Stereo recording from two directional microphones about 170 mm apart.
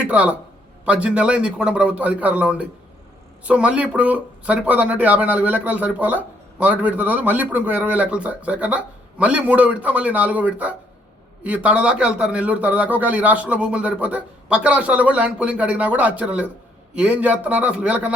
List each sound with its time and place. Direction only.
0.0 s speech: 10° right (ahead or behind)